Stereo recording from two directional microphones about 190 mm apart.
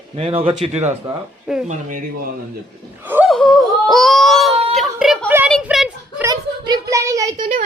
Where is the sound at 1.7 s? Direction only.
45° right (ahead or behind).